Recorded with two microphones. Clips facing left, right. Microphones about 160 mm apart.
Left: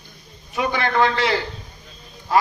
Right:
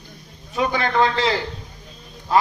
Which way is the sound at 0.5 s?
25° right (ahead or behind).